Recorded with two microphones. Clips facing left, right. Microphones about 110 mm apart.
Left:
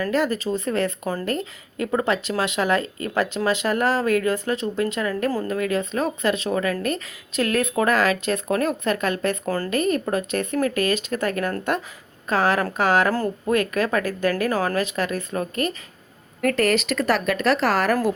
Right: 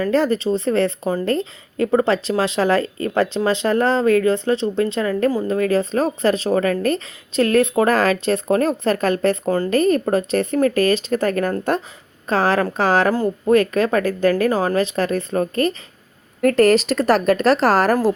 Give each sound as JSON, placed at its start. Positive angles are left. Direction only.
{"t": 0.0, "sound": "a woman's voice", "side_deg": -30}